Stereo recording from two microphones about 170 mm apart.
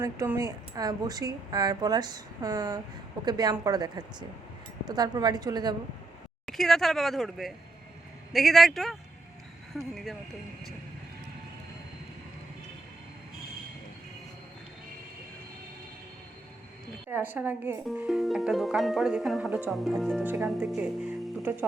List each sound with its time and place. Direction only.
0.0 s speech: 15° right (ahead or behind)
6.4 s speech: centre (ahead or behind)
17.1 s speech: 10° right (ahead or behind)